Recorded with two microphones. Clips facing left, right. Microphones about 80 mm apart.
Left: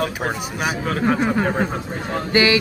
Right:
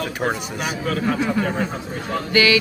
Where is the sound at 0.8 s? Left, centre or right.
Left.